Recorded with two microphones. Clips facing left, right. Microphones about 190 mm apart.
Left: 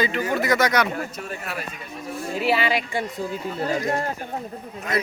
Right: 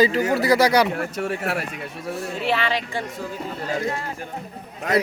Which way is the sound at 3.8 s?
40° left (ahead or behind).